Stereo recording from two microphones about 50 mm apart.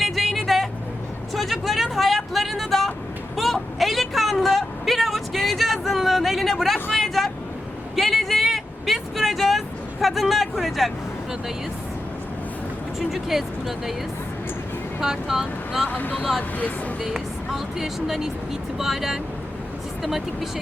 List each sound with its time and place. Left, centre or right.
0.0 s vehicle: centre
3.3 s a sound: centre
6.9 s vehicle: centre
13.0 s speech: centre
15.0 s speech: centre
15.9 s speech: left
17.0 s speech: centre